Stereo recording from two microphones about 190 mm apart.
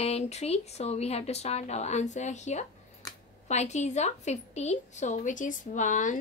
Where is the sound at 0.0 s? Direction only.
35° left (ahead or behind).